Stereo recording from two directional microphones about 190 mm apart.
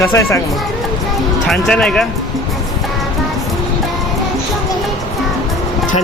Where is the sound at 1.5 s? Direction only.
5° left (ahead or behind).